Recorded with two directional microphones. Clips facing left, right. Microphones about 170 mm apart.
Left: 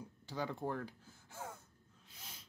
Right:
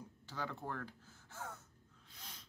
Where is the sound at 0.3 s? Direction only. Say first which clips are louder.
Left 4 dB; 15° left (ahead or behind).